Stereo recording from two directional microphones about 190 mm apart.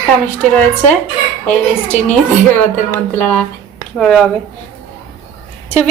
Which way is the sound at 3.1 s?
10° left (ahead or behind).